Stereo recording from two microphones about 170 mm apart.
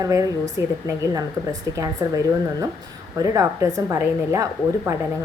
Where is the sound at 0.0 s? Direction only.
20° right (ahead or behind).